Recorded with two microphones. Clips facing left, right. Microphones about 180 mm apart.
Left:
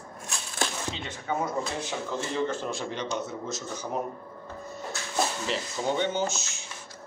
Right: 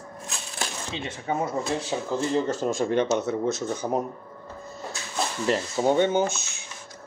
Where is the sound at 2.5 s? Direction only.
45° right (ahead or behind); by 3.9 s 60° right (ahead or behind).